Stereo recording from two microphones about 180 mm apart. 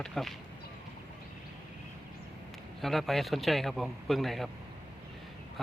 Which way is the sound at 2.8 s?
Centre (ahead or behind).